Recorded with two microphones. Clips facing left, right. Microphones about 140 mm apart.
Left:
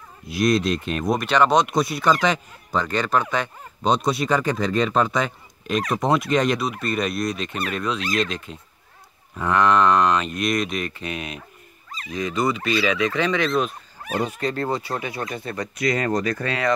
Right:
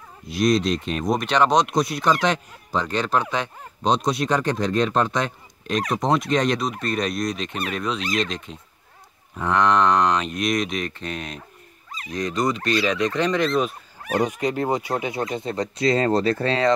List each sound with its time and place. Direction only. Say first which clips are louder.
0.3 s speech: even; centre (ahead or behind)
14.1 s speech: right 2 dB; 15° right (ahead or behind)